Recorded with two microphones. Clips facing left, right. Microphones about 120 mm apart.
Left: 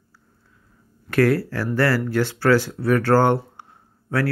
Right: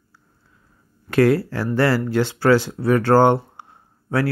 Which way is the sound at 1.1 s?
20° right (ahead or behind).